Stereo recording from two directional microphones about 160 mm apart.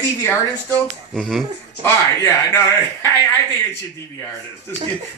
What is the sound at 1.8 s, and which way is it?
Speech, 15° left (ahead or behind).